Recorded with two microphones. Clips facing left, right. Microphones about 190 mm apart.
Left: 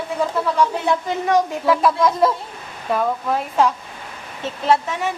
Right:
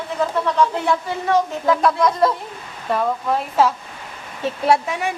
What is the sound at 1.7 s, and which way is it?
Speech, 5° left (ahead or behind).